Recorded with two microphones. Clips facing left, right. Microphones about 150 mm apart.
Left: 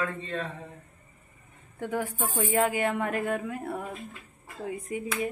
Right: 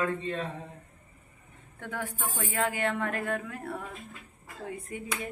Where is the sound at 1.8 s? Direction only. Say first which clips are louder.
Left 5 dB; 10° left (ahead or behind).